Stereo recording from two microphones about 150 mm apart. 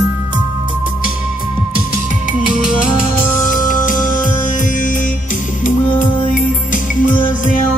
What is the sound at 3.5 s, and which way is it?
Music, 60° left (ahead or behind).